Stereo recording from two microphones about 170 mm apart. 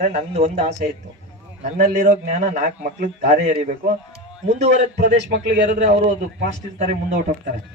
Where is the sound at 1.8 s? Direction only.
55° right (ahead or behind).